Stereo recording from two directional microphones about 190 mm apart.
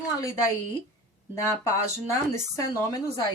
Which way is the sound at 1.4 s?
15° left (ahead or behind).